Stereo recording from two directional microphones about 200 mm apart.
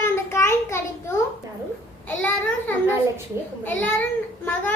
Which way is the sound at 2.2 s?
10° left (ahead or behind).